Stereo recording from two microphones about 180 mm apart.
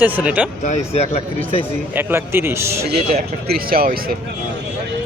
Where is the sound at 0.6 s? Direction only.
40° left (ahead or behind).